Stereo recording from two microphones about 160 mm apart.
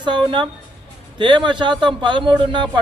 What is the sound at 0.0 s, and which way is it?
Speech, 30° right (ahead or behind).